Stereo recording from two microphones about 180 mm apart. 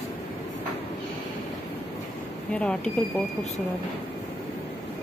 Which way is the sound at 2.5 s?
5° left (ahead or behind).